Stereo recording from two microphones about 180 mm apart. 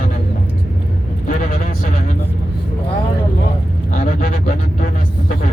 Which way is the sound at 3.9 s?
50° left (ahead or behind).